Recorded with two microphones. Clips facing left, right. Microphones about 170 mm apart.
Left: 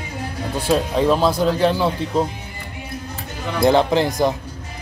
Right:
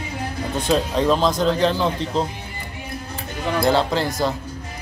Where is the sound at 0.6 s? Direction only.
10° left (ahead or behind).